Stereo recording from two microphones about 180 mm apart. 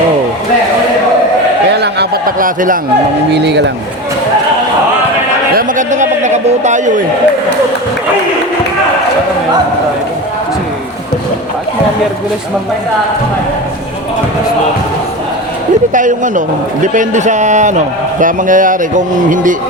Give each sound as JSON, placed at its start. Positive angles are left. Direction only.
{"t": 1.7, "sound": "a sound", "side_deg": -65}
{"t": 3.3, "sound": "speech", "side_deg": -70}
{"t": 5.5, "sound": "speech", "side_deg": -50}
{"t": 15.9, "sound": "speech", "side_deg": -45}